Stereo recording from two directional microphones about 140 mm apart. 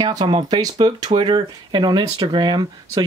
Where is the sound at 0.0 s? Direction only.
30° right (ahead or behind).